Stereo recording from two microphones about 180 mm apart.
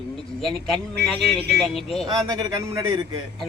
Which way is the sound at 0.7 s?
5° left (ahead or behind).